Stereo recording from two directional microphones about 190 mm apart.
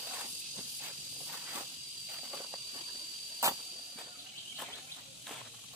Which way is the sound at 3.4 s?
15° right (ahead or behind).